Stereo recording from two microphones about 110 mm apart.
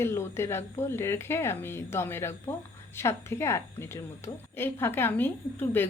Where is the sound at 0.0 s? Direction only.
25° left (ahead or behind).